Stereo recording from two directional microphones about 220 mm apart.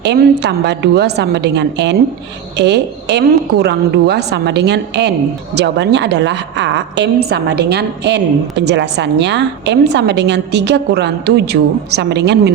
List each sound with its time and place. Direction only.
0.0 s a woman's voice: 50° right (ahead or behind)